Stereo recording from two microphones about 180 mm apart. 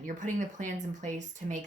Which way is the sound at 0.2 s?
45° right (ahead or behind).